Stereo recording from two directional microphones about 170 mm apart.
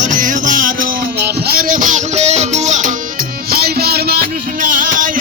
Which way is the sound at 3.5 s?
65° right (ahead or behind).